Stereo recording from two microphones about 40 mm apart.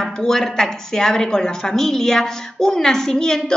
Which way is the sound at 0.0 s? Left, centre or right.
Centre.